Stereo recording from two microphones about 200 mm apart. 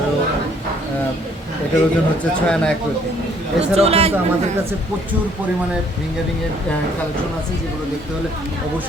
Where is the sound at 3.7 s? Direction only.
30° right (ahead or behind).